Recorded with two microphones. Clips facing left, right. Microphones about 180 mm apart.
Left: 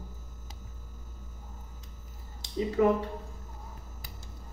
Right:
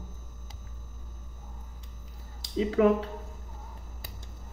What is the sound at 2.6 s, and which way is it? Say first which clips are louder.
Speech: right 2 dB; 90° right.